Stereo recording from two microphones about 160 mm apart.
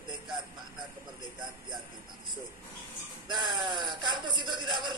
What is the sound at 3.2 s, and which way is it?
A man's voice, 30° right (ahead or behind).